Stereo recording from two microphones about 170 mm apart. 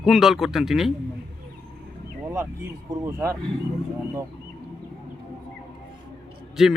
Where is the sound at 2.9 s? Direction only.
15° right (ahead or behind).